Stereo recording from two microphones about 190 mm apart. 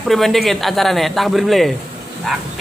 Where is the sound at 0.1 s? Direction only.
Centre (ahead or behind).